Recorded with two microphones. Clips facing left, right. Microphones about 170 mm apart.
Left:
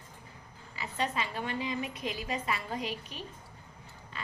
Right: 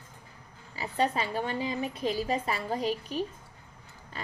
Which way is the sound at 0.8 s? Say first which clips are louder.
Right 5 dB; 35° right (ahead or behind).